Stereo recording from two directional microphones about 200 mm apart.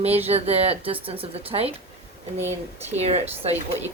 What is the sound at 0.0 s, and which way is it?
Speech, 30° right (ahead or behind).